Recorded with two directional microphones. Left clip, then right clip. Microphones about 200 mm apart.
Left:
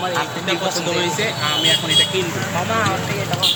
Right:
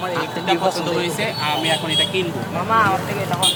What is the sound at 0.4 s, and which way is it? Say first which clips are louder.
Speech: right 1 dB; 35° right (ahead or behind).